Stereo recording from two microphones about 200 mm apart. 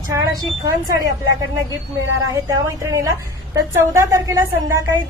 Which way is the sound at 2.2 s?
15° right (ahead or behind).